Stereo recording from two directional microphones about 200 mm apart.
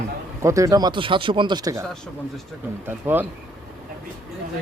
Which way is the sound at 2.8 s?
10° right (ahead or behind).